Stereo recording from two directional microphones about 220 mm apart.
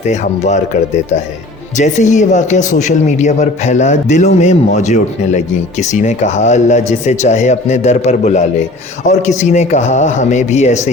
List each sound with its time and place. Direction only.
0.0 s a man's voice: 30° left (ahead or behind)